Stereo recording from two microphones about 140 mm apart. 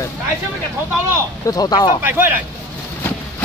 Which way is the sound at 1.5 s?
30° left (ahead or behind).